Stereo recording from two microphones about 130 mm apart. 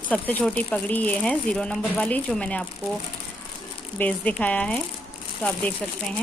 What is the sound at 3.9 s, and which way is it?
Speech, 10° left (ahead or behind).